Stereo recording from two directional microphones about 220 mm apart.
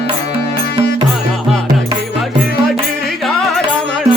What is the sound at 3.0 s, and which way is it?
Music, centre (ahead or behind).